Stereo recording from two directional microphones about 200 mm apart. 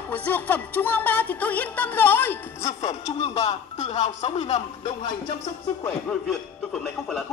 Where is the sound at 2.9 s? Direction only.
30° left (ahead or behind).